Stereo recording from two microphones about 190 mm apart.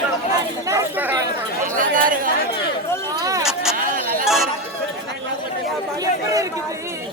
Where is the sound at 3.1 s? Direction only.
15° right (ahead or behind).